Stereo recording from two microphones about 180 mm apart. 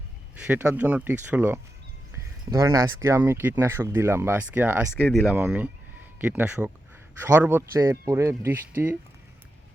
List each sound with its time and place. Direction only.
0.3 s speech: 10° right (ahead or behind)
4.9 s speech: 10° left (ahead or behind)
5.3 s speech: 10° right (ahead or behind)